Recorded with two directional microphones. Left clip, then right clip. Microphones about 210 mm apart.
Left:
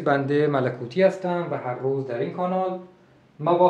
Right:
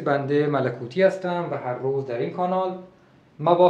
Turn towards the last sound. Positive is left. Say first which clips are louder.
# right 3 dB
turn(degrees=-40)  # may be behind; listen again after turning